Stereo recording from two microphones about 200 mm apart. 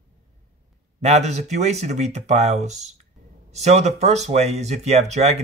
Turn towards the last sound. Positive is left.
turn(degrees=-35)  # may be behind; listen again after turning